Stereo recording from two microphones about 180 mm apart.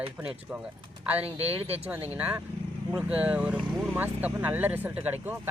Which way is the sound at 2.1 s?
5° right (ahead or behind).